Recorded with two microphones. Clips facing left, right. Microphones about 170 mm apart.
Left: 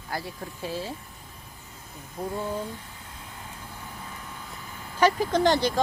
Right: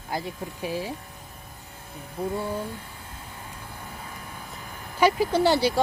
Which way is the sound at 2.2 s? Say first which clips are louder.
Right 3 dB; 10° right (ahead or behind).